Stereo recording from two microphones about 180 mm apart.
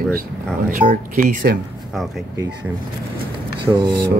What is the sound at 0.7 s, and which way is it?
Speech, 50° right (ahead or behind).